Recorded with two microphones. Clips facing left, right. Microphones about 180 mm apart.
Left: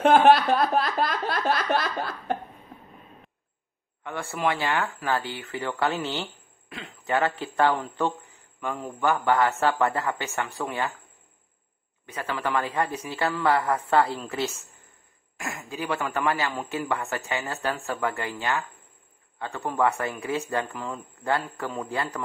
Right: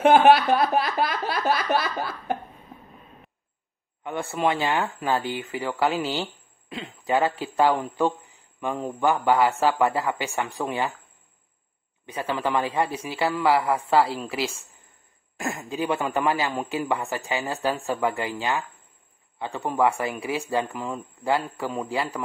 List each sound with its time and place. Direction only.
0.0 s snicker: 5° right (ahead or behind)
4.0 s a man's voice: 20° right (ahead or behind)
12.1 s a man's voice: 25° right (ahead or behind)
15.3 s a man's voice: 25° right (ahead or behind); by 22.2 s 10° right (ahead or behind)